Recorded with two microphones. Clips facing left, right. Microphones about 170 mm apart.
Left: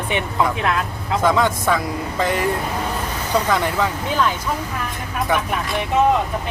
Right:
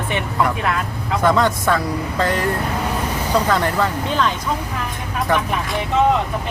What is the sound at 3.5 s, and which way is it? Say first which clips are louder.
Speech: right 1 dB; 10° left (ahead or behind).